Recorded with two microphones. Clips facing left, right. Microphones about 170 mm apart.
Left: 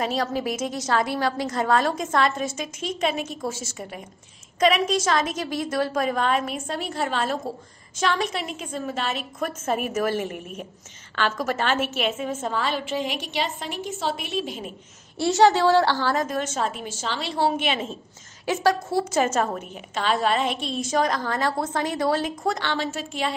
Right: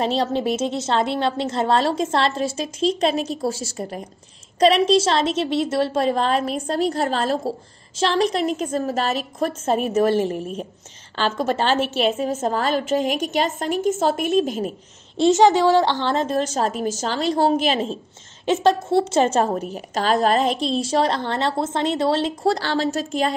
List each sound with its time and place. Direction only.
0.0 s a woman's voice: 30° right (ahead or behind); by 14.7 s 45° right (ahead or behind)
15.1 s a woman's voice: 20° right (ahead or behind); by 17.9 s 35° right (ahead or behind)
18.4 s a woman's voice: 25° right (ahead or behind); by 23.3 s 40° right (ahead or behind)